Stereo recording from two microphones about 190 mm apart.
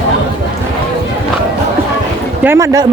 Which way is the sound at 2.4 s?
15° right (ahead or behind).